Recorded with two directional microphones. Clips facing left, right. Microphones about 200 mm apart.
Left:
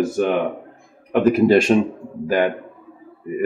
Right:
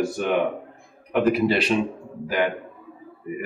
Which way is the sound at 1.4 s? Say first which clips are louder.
Left 8 dB; 45° left (ahead or behind).